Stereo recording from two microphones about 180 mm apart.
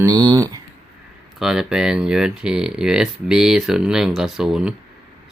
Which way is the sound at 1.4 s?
5° right (ahead or behind).